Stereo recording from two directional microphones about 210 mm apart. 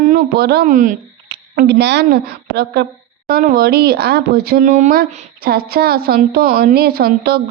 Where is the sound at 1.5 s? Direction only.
55° right (ahead or behind).